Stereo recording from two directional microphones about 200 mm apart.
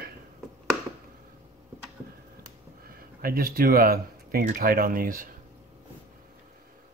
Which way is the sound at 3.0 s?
45° right (ahead or behind).